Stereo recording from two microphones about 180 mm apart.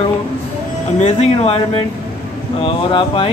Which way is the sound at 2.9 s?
30° left (ahead or behind).